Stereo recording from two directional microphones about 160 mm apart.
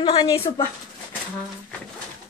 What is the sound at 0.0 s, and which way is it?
Speech, 30° left (ahead or behind).